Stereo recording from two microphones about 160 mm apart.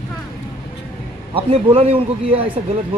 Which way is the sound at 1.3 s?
35° right (ahead or behind).